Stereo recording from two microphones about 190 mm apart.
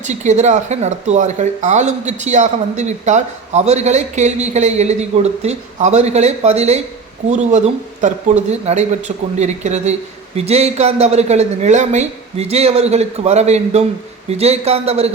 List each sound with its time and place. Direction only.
0.0 s speech: 40° right (ahead or behind)